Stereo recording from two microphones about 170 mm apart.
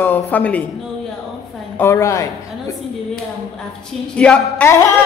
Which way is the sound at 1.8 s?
15° left (ahead or behind).